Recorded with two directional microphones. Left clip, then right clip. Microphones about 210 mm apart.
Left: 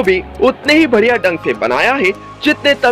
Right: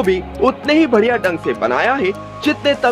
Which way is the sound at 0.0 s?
5° left (ahead or behind).